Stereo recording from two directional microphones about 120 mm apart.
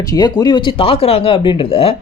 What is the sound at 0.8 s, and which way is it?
Speech, 55° left (ahead or behind).